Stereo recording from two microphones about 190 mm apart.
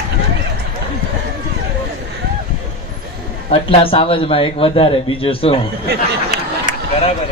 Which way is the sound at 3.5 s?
30° left (ahead or behind).